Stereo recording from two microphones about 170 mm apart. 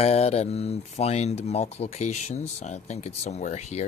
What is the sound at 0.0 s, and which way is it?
Speech, 40° left (ahead or behind).